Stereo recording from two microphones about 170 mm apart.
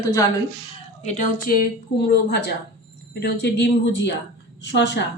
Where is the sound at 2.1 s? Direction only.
75° left (ahead or behind).